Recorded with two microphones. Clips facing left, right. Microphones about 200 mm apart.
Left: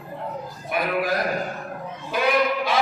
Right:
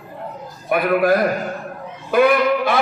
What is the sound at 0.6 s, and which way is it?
A man's voice, 55° right (ahead or behind).